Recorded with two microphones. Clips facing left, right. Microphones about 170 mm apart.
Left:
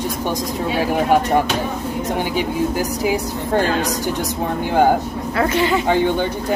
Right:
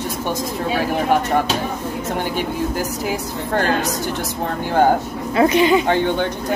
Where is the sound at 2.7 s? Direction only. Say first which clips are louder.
Left 3 dB; 10° left (ahead or behind).